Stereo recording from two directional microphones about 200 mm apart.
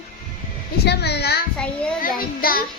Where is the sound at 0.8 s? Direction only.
55° left (ahead or behind).